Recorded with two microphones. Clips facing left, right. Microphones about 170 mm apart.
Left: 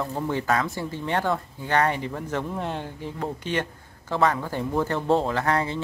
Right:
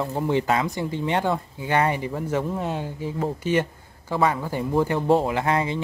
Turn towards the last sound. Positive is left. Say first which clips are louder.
# right 1 dB
turn(degrees=-15)  # may be behind; listen again after turning